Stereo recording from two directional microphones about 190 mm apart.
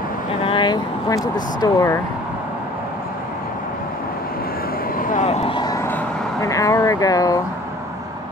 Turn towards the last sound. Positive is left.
turn(degrees=20)  # may be behind; listen again after turning